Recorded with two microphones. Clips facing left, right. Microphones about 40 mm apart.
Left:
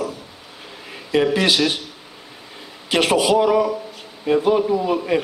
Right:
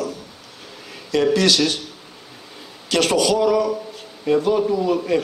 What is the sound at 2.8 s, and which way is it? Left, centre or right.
A man's voice, left.